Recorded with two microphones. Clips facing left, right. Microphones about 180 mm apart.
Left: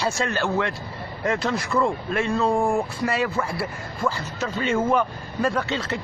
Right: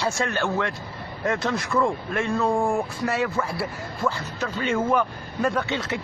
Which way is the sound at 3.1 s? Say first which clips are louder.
Right 1 dB; centre (ahead or behind).